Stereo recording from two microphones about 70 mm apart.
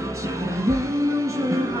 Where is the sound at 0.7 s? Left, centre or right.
Right.